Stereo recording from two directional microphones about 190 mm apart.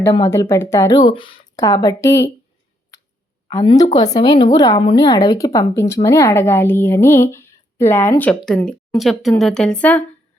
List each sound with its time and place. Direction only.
0.3 s speech: 15° left (ahead or behind)
3.5 s speech: 20° left (ahead or behind)